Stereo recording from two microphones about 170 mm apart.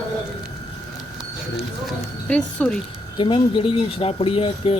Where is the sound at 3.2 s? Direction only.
30° left (ahead or behind).